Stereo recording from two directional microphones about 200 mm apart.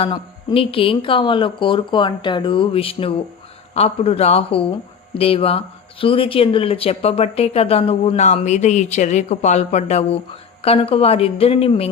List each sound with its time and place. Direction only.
0.0 s speech: 25° left (ahead or behind)